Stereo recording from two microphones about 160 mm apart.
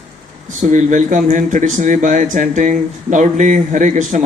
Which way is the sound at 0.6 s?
50° right (ahead or behind).